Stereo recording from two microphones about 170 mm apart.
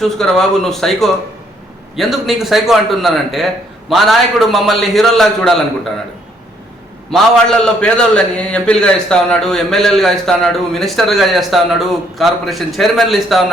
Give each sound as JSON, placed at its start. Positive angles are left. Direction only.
{"t": 0.0, "sound": "a man's voice", "side_deg": 0}
{"t": 7.1, "sound": "a man's voice", "side_deg": 5}